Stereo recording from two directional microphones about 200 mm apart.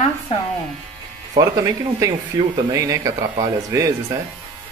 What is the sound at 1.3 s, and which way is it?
Speech, 20° right (ahead or behind).